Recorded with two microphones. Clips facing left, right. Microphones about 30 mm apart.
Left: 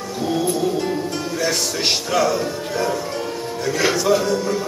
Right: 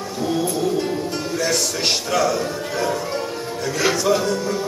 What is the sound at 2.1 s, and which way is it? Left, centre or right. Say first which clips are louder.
Speech: left 2 dB; centre.